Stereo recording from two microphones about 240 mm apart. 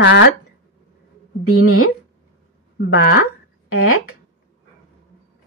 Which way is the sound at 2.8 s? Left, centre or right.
Left.